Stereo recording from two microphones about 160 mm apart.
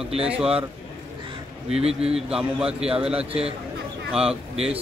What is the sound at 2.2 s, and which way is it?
A man's voice, 5° right (ahead or behind).